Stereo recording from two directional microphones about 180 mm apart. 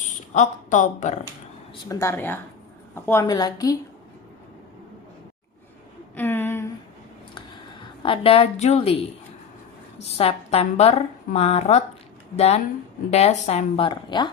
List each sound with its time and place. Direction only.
0.3 s speech: 45° left (ahead or behind)
1.9 s a woman's voice: 15° left (ahead or behind)
6.1 s a sound: 10° left (ahead or behind)
8.0 s a woman's voice: 30° left (ahead or behind)
10.2 s a woman's voice: 35° left (ahead or behind)
13.1 s a woman's voice: 35° left (ahead or behind)